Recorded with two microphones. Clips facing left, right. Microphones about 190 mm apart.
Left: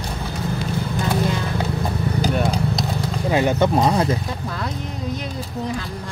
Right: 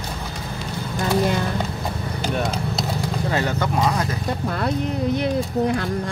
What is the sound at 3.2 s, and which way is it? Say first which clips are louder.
Speech: left 7 dB; 15° left (ahead or behind).